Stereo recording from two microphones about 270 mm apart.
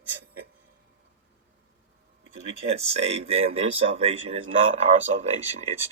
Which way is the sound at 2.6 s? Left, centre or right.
Right.